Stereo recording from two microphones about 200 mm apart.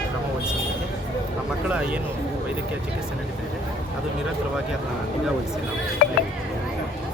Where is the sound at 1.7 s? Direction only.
5° right (ahead or behind).